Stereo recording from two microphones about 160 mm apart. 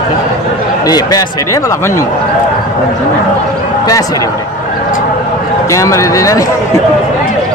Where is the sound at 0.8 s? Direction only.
25° left (ahead or behind).